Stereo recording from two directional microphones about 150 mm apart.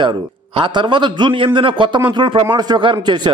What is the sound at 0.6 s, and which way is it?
A man's voice, 30° right (ahead or behind).